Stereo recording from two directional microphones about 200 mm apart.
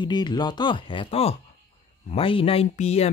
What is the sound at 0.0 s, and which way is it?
Speech, 20° left (ahead or behind).